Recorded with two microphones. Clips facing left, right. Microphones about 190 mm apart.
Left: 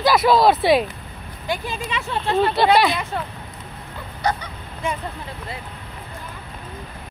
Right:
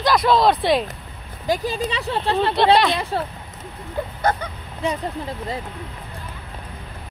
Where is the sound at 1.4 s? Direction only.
40° right (ahead or behind).